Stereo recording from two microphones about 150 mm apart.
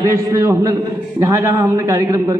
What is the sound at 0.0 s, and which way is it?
A man's voice, 20° right (ahead or behind).